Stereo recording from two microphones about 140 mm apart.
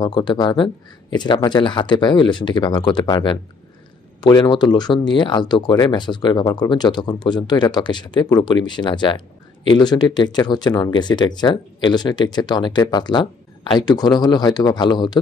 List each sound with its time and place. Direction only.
0.0 s speech: 35° left (ahead or behind)